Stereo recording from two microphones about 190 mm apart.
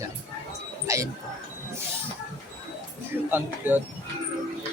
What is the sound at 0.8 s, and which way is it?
Speech, 15° right (ahead or behind).